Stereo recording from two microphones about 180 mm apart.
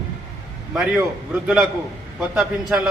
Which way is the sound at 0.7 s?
5° right (ahead or behind).